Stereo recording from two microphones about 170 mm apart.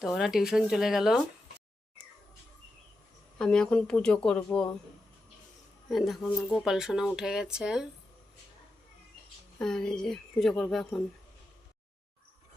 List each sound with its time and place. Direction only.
0.0 s speech: centre (ahead or behind)
3.3 s speech: 5° left (ahead or behind)
5.9 s speech: centre (ahead or behind)
9.6 s speech: 5° left (ahead or behind)